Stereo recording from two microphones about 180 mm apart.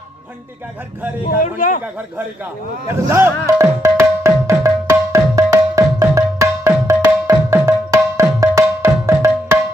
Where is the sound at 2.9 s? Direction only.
15° right (ahead or behind).